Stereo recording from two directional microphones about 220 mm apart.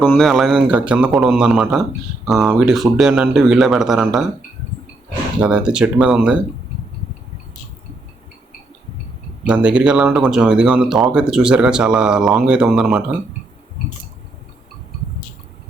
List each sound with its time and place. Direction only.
0.1 s speech: centre (ahead or behind)
5.4 s speech: 5° right (ahead or behind)
9.5 s speech: 5° right (ahead or behind)